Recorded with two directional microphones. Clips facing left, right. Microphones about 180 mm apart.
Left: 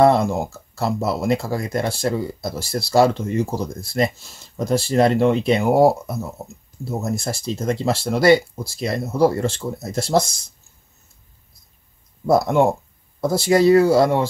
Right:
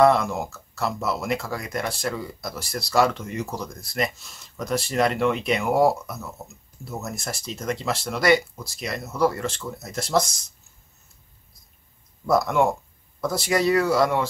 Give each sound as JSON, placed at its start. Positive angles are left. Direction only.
{"t": 0.0, "sound": "speech", "side_deg": 30}
{"t": 12.3, "sound": "speech", "side_deg": 30}